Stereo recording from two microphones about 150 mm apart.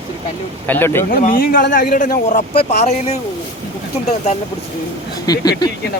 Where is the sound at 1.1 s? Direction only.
70° left (ahead or behind).